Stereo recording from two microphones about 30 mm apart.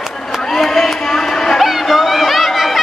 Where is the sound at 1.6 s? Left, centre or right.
Centre.